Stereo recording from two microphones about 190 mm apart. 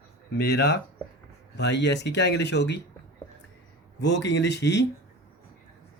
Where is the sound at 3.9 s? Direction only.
65° left (ahead or behind).